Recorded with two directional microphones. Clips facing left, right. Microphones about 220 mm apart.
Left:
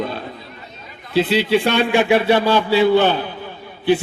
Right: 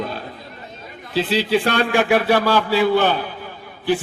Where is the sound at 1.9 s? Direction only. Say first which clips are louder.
Left 2 dB; 20° left (ahead or behind).